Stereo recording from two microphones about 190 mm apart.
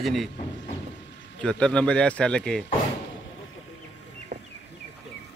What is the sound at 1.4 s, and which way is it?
A man's voice, 5° left (ahead or behind).